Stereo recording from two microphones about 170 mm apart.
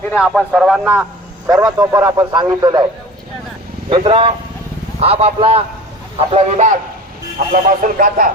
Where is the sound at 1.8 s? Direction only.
20° right (ahead or behind).